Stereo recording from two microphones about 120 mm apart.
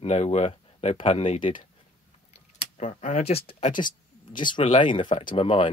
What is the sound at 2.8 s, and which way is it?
Speech, 75° left (ahead or behind).